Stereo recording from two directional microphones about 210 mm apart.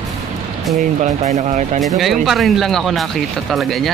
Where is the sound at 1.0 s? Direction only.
30° right (ahead or behind).